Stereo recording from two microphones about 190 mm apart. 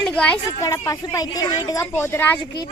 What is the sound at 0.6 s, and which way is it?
A woman's voice, 15° left (ahead or behind).